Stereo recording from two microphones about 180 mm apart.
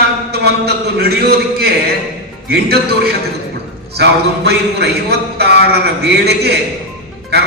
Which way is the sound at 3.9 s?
65° right (ahead or behind).